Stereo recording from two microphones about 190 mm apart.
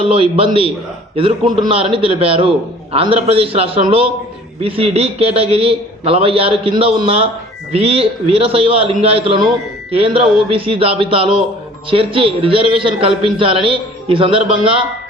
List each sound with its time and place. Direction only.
0.0 s a man's voice: 30° right (ahead or behind)